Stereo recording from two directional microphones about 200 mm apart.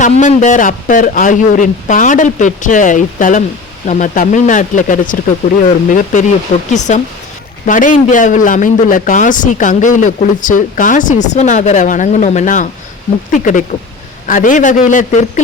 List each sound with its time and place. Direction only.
0.0 s a man's voice: 35° left (ahead or behind)